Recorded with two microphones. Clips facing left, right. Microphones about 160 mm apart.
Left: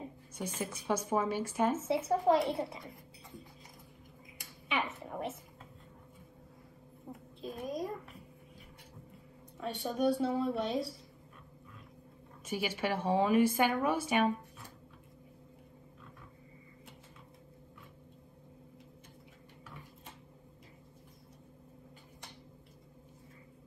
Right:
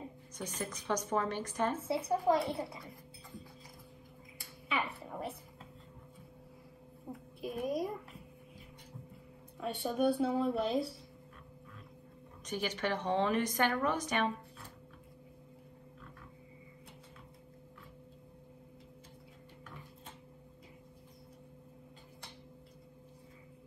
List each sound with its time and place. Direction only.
0.4 s a woman's voice: 10° left (ahead or behind)
1.8 s a child's voice: 25° left (ahead or behind)
4.4 s a sound: 20° left (ahead or behind)
7.1 s a sound: 10° right (ahead or behind)
9.6 s a woman's voice: centre (ahead or behind)
12.4 s a woman's voice: 10° left (ahead or behind)